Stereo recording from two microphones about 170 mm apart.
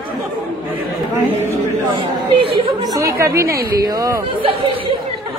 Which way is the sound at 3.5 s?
60° right (ahead or behind).